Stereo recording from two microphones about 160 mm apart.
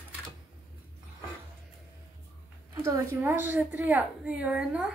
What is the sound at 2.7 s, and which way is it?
A woman's voice, 20° right (ahead or behind).